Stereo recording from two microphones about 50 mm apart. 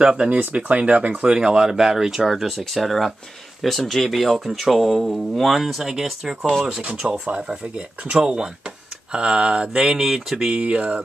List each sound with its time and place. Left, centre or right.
0.0 s speech: centre
0.3 s speech: right
1.3 s speech: centre
6.8 s speech: right